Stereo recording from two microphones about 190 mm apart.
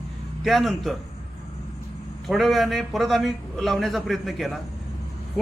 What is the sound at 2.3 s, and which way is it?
A man's voice, centre (ahead or behind).